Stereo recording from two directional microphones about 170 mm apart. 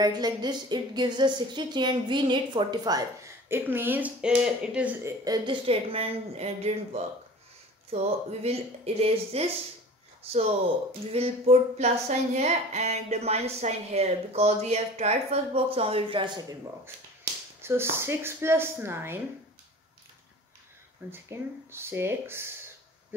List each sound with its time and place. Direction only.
0.0 s a woman's voice: 25° right (ahead or behind); by 4.9 s 5° right (ahead or behind)
5.0 s a woman's voice: 20° right (ahead or behind)
5.7 s speech: 35° right (ahead or behind)
11.1 s speech: 35° right (ahead or behind)
17.6 s speech: 15° right (ahead or behind)
21.1 s speech: 15° right (ahead or behind)